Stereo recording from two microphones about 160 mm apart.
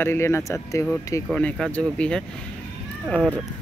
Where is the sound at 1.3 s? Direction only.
5° left (ahead or behind).